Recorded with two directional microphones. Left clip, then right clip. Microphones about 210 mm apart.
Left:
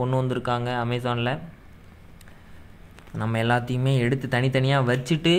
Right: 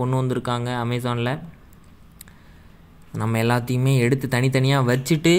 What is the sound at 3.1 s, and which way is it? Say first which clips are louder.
Speech: right 1 dB; 15° right (ahead or behind).